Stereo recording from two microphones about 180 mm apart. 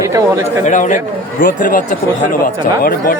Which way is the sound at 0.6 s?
45° left (ahead or behind).